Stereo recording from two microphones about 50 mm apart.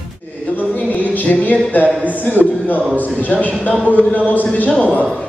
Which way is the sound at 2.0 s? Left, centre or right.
Left.